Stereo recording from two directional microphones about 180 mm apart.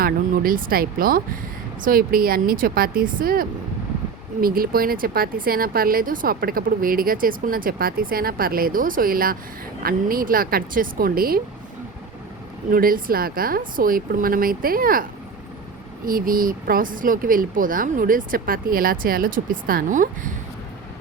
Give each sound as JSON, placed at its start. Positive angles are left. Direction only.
{"t": 0.0, "sound": "speech", "side_deg": -55}
{"t": 12.7, "sound": "speech", "side_deg": -55}
{"t": 16.0, "sound": "speech", "side_deg": -50}